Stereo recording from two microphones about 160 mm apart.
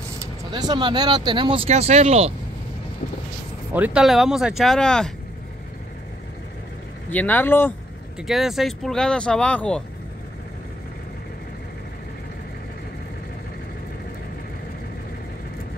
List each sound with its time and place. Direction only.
0.5 s speech: 25° right (ahead or behind)
3.7 s speech: 10° right (ahead or behind)
7.1 s speech: 10° left (ahead or behind)
8.2 s speech: centre (ahead or behind)